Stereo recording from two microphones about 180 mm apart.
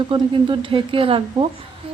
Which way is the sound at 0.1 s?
30° right (ahead or behind).